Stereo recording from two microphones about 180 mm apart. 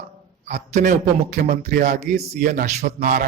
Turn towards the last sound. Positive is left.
turn(degrees=-50)  # may be behind; listen again after turning